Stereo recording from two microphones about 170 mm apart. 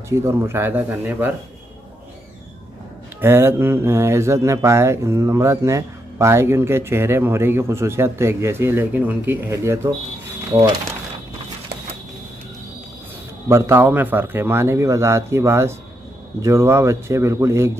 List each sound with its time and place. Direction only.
0.1 s speech: 15° right (ahead or behind)
3.2 s speech: 15° right (ahead or behind)
13.5 s speech: 15° right (ahead or behind)